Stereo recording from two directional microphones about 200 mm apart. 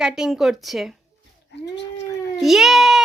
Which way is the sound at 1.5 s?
60° left (ahead or behind).